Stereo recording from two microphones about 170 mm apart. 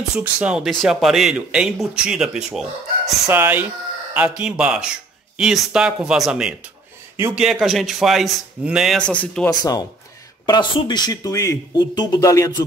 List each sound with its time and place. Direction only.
0.2 s speech: 5° right (ahead or behind)
9.5 s speech: 20° left (ahead or behind)